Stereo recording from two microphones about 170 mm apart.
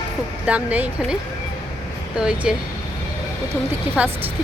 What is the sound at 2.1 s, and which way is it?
Speech, 5° right (ahead or behind).